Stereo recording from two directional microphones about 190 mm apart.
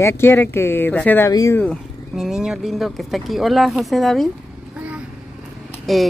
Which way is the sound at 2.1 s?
5° right (ahead or behind).